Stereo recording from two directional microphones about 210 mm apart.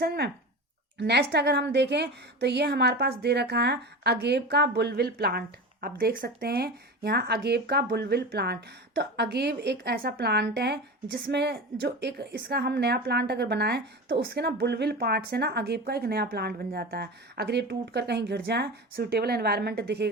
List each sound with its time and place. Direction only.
0.0 s a woman's voice: 50° right (ahead or behind)